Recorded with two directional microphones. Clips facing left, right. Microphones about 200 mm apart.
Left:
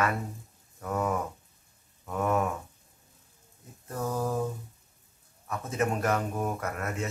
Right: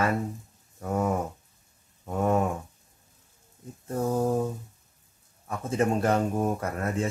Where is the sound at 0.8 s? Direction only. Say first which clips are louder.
Right 3 dB; 30° right (ahead or behind).